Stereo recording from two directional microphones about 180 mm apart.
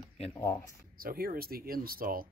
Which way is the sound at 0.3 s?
10° left (ahead or behind).